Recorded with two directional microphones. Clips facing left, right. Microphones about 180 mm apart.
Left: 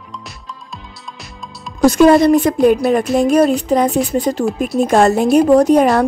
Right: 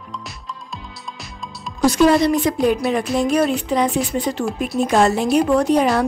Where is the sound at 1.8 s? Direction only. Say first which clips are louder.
Left 5 dB; 50° left (ahead or behind).